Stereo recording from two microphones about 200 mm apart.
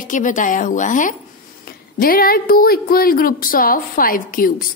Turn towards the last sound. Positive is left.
turn(degrees=45)  # may be behind; listen again after turning